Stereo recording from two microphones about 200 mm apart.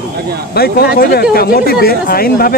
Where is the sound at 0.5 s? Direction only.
50° left (ahead or behind).